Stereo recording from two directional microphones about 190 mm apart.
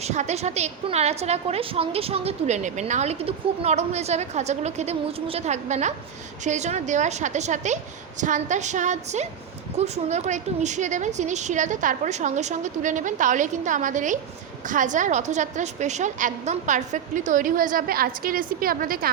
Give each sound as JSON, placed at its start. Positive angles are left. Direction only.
{"t": 0.0, "sound": "a woman's voice", "side_deg": -35}